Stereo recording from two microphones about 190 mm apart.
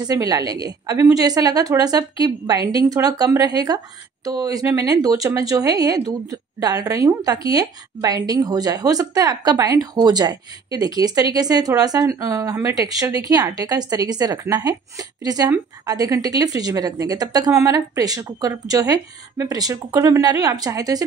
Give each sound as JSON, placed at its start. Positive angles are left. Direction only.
{"t": 0.0, "sound": "a woman's voice", "side_deg": -20}